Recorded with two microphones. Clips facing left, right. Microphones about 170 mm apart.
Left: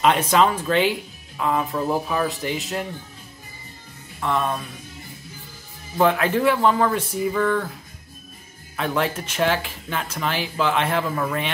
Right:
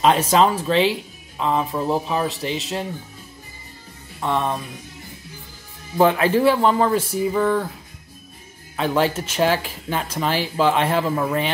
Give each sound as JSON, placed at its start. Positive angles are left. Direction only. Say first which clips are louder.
{"t": 0.0, "sound": "speech", "louder": "right 2 dB", "side_deg": -30}
{"t": 4.2, "sound": "speech", "louder": "right 1 dB", "side_deg": -25}
{"t": 5.9, "sound": "speech", "louder": "right 3 dB", "side_deg": -25}
{"t": 7.1, "sound": "a sound", "louder": "right 2 dB", "side_deg": -10}
{"t": 8.9, "sound": "speech", "louder": "right 4 dB", "side_deg": -30}